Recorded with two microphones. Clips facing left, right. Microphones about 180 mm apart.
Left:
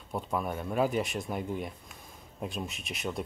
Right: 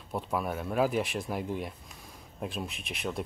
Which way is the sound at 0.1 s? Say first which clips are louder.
Right 1 dB; 5° right (ahead or behind).